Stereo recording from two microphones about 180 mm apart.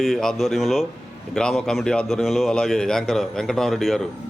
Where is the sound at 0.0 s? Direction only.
Centre (ahead or behind).